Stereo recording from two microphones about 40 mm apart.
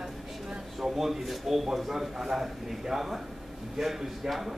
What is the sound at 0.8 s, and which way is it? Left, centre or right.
A man's voice, centre.